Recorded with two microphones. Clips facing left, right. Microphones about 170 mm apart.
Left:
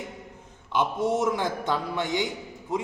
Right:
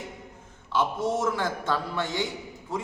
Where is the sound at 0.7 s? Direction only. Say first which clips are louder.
Left 1 dB; 15° left (ahead or behind).